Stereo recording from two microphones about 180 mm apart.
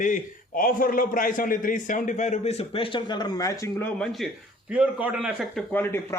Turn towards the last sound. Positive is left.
turn(degrees=15)  # may be behind; listen again after turning